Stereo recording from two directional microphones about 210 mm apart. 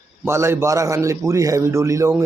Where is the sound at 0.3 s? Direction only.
10° right (ahead or behind).